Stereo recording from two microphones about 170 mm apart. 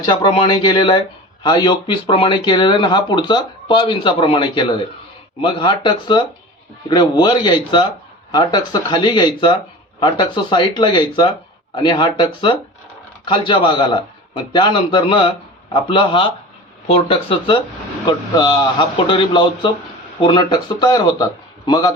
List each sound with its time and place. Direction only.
0.0 s speech: 25° left (ahead or behind)